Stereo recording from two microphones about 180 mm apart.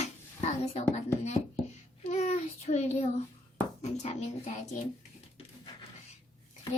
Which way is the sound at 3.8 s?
35° left (ahead or behind).